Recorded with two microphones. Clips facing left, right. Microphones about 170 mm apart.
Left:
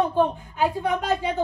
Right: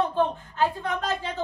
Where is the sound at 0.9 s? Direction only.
Centre (ahead or behind).